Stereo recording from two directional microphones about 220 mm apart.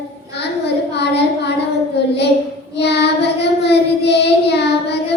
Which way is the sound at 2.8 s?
50° left (ahead or behind).